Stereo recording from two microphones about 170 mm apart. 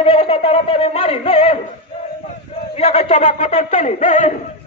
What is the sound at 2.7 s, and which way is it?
Speech, 40° left (ahead or behind).